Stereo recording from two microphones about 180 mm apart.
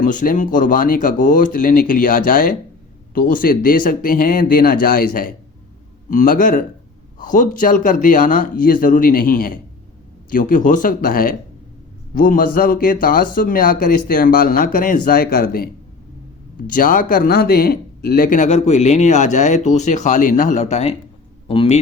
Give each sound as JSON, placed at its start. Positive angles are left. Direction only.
{"t": 0.0, "sound": "a man's voice", "side_deg": 45}